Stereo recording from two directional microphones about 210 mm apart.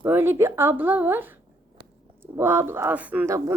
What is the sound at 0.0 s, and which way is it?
Speech, 10° right (ahead or behind).